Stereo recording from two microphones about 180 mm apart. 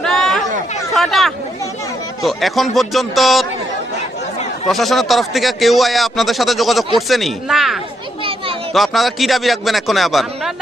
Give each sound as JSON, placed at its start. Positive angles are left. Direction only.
{"t": 0.0, "sound": "chatter", "side_deg": 5}
{"t": 0.9, "sound": "a man's voice", "side_deg": 0}
{"t": 4.7, "sound": "a man's voice", "side_deg": 0}
{"t": 8.2, "sound": "children playing", "side_deg": -30}
{"t": 8.7, "sound": "a man's voice", "side_deg": 0}